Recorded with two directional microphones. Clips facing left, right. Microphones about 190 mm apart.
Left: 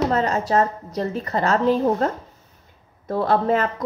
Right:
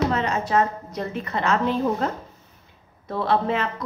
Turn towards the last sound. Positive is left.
turn(degrees=45)  # may be behind; listen again after turning